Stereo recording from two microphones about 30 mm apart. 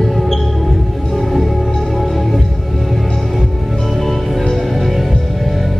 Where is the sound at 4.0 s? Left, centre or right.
Centre.